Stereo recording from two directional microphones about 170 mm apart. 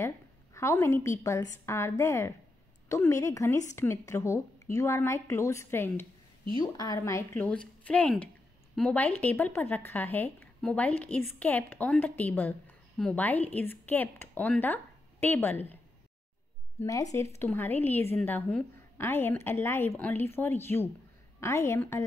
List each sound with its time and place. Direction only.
0.6 s a woman's voice: 15° left (ahead or behind)
16.8 s a woman's voice: 20° left (ahead or behind)